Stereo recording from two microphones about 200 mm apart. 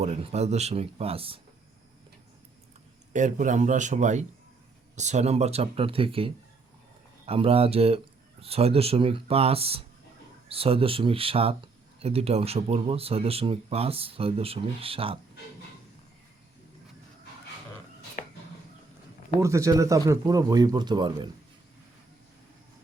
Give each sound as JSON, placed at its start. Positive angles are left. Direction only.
{"t": 0.0, "sound": "speech", "side_deg": -30}
{"t": 3.1, "sound": "speech", "side_deg": -40}
{"t": 18.2, "sound": "a sound", "side_deg": 40}
{"t": 19.4, "sound": "speech", "side_deg": -15}